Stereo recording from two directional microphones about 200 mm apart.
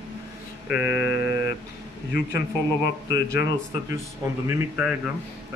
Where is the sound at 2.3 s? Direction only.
55° left (ahead or behind).